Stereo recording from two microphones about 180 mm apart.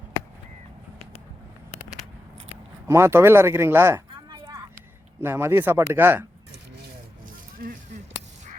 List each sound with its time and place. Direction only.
2.8 s speech: 15° right (ahead or behind)
4.1 s a sound: 25° right (ahead or behind)
5.2 s speech: 10° right (ahead or behind)